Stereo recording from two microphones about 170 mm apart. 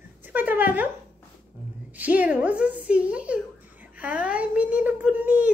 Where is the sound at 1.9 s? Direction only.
10° right (ahead or behind).